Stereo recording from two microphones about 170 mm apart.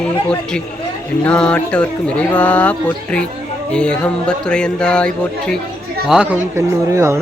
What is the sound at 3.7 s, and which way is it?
Music, 5° left (ahead or behind).